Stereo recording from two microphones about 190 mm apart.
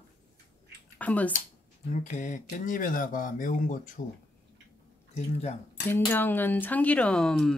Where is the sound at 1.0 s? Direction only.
10° left (ahead or behind).